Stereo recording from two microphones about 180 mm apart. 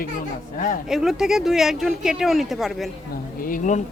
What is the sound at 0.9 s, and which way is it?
Speech, 5° right (ahead or behind).